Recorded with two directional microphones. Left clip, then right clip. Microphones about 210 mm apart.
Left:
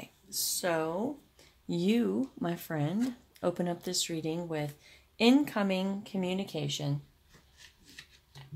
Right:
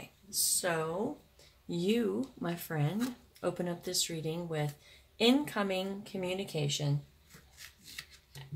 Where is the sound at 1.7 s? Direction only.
40° left (ahead or behind).